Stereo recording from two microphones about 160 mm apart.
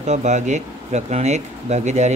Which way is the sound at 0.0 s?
45° right (ahead or behind).